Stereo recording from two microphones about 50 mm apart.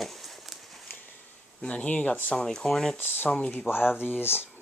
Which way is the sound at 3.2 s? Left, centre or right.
Left.